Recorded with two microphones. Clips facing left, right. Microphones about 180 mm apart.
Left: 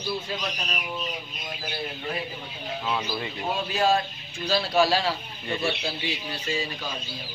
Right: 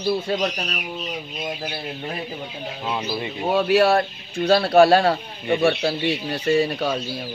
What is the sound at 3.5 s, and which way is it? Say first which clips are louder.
Speech: right 7 dB; 65° right (ahead or behind).